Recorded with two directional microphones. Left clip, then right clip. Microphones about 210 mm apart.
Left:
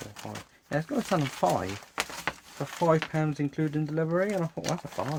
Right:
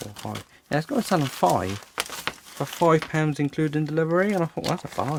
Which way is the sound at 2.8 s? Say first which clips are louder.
Right 5 dB; 45° right (ahead or behind).